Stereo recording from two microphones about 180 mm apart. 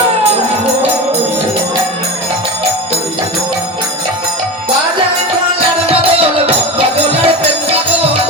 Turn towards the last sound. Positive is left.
turn(degrees=-35)  # may be behind; listen again after turning